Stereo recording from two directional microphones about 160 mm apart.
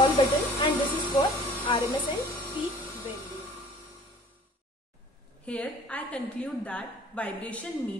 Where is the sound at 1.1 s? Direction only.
25° left (ahead or behind).